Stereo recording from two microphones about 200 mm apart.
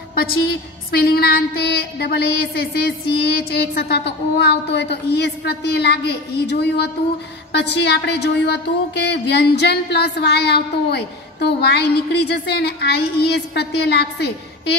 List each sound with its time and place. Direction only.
0.1 s a woman's voice: 50° left (ahead or behind)